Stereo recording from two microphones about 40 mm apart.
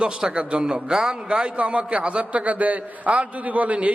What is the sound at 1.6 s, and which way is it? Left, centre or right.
A man's voice, right.